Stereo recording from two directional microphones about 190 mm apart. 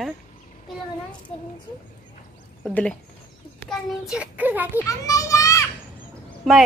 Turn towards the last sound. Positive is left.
turn(degrees=0)  # may be behind; listen again after turning